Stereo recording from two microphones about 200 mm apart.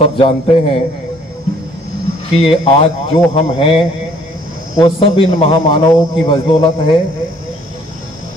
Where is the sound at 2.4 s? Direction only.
25° left (ahead or behind).